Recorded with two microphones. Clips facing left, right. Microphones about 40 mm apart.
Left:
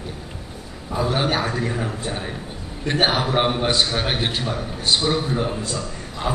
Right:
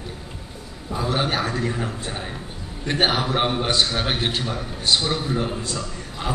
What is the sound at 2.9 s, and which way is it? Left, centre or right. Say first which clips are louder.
A man's voice: left 1 dB; centre.